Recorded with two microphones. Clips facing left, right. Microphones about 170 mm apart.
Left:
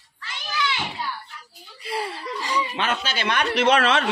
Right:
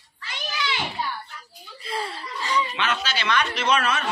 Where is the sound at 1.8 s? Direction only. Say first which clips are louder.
Left 2 dB; 10° left (ahead or behind).